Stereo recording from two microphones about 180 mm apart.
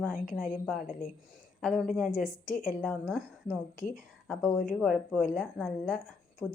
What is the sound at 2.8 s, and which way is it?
Speech, 5° left (ahead or behind).